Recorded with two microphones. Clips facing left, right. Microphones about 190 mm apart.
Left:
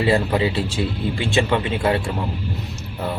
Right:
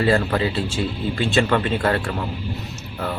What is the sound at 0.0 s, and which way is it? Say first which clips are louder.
Speech: left 1 dB; 15° left (ahead or behind).